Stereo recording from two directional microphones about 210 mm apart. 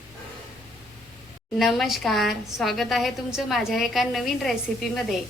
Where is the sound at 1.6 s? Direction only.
Centre (ahead or behind).